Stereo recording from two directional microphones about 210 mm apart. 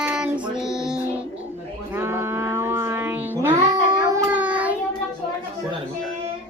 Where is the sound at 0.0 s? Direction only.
5° right (ahead or behind).